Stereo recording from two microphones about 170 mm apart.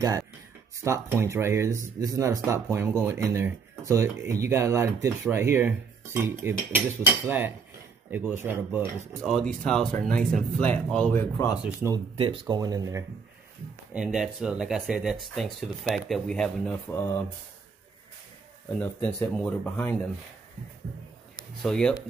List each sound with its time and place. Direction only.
0.7 s speech: 15° right (ahead or behind)
9.2 s speech: 5° left (ahead or behind)
12.2 s speech: 30° right (ahead or behind)
13.9 s speech: 5° right (ahead or behind)
16.9 s speech: 15° left (ahead or behind)
18.8 s speech: 10° left (ahead or behind)
21.6 s speech: 5° left (ahead or behind)